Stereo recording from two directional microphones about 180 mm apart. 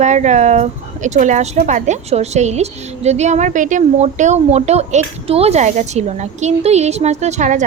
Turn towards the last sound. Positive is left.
turn(degrees=-45)  # may be behind; listen again after turning